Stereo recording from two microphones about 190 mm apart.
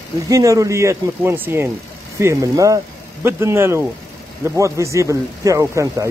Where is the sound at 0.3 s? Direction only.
15° right (ahead or behind).